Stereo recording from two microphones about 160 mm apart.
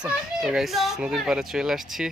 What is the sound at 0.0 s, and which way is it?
A child's voice, 5° right (ahead or behind).